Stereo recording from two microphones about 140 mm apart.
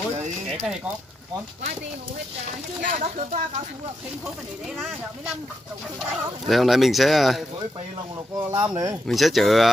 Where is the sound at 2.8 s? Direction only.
60° right (ahead or behind).